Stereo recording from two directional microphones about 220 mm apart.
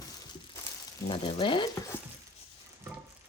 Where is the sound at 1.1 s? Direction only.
25° left (ahead or behind).